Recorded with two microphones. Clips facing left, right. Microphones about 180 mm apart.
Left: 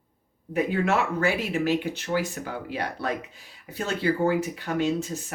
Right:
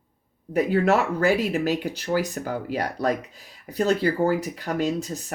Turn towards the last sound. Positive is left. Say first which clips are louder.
# even
turn(degrees=-40)  # may be behind; listen again after turning